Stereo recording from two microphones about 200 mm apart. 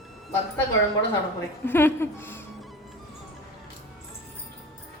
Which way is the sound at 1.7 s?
10° left (ahead or behind).